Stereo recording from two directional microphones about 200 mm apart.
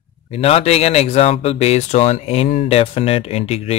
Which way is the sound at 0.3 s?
30° left (ahead or behind).